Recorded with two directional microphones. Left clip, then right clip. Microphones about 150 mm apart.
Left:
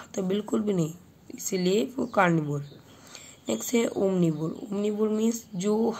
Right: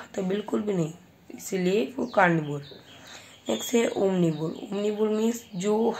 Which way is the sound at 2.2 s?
40° left (ahead or behind).